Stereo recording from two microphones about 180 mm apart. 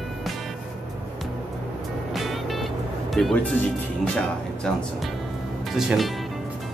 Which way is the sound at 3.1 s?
Centre (ahead or behind).